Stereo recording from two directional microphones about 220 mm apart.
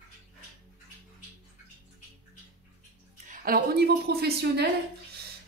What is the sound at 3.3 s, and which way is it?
A woman's voice, 45° right (ahead or behind).